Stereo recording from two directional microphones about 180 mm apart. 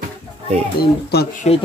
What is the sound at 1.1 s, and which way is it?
Speech, 60° left (ahead or behind).